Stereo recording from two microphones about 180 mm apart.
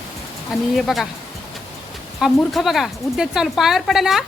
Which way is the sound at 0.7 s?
Centre (ahead or behind).